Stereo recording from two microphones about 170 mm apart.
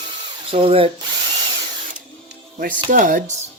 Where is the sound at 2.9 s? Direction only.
50° right (ahead or behind).